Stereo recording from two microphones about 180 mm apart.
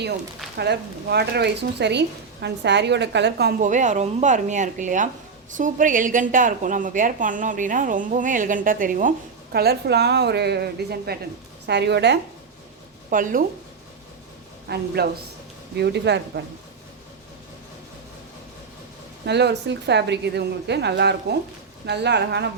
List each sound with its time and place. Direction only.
0.5 s speech: 65° right (ahead or behind)
3.6 s a woman's voice: 45° right (ahead or behind); by 12.2 s 70° right (ahead or behind)
13.1 s speech: 50° right (ahead or behind)
14.7 s a man's voice: 60° right (ahead or behind)
19.2 s speech: 70° right (ahead or behind)